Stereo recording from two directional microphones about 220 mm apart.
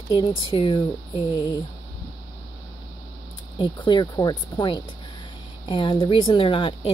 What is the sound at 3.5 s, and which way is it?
Speech, 20° left (ahead or behind).